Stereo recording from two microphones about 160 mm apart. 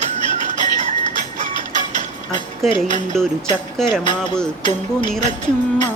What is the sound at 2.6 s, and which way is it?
Music, centre (ahead or behind).